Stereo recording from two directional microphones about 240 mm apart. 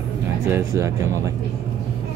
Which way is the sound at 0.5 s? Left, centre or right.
Centre.